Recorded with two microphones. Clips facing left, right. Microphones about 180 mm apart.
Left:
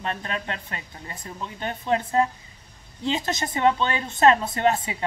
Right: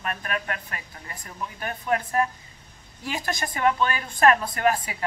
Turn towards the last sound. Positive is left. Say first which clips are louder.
# left 1 dB
turn(degrees=25)  # may be behind; listen again after turning